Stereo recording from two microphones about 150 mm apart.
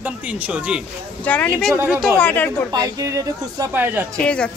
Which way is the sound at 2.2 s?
10° left (ahead or behind).